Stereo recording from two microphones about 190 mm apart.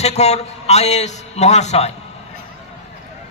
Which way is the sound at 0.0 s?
35° left (ahead or behind).